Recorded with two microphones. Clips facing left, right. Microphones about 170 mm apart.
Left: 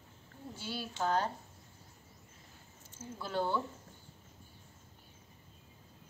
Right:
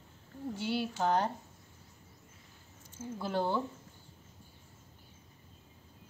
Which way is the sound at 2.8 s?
15° right (ahead or behind).